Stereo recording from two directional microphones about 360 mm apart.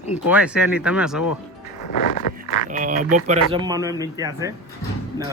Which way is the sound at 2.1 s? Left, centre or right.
Left.